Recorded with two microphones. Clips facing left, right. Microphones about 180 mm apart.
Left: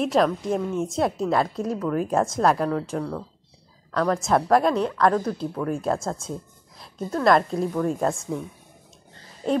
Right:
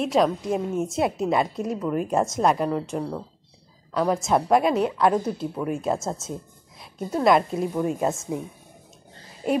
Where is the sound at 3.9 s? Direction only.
5° right (ahead or behind).